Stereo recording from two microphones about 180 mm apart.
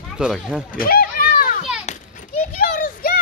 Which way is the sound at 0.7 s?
55° left (ahead or behind).